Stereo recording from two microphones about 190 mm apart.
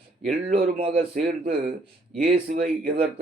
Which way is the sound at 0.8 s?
30° right (ahead or behind).